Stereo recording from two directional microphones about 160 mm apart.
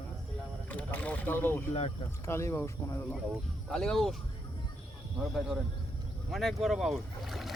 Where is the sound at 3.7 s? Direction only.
5° left (ahead or behind).